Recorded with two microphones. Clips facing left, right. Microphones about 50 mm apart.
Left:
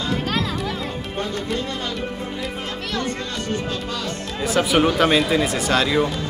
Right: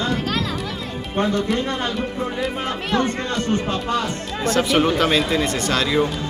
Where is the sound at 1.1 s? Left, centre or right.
Right.